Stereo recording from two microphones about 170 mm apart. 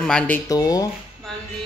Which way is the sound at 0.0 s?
5° left (ahead or behind).